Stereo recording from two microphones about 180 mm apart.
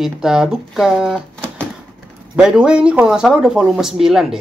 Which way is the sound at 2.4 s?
5° right (ahead or behind).